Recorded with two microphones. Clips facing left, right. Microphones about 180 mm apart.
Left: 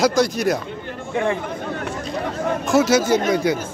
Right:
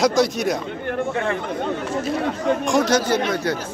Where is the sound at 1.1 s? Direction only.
15° left (ahead or behind).